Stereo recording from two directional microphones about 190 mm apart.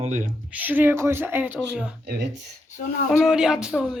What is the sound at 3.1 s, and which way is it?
Speech, 5° right (ahead or behind).